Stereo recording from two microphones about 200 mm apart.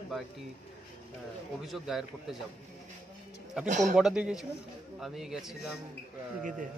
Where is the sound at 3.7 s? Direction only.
35° right (ahead or behind).